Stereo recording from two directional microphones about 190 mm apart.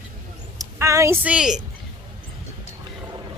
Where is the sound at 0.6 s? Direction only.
15° right (ahead or behind).